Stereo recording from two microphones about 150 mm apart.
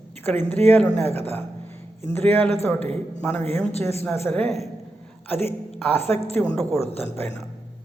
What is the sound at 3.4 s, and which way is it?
Speech, 40° right (ahead or behind).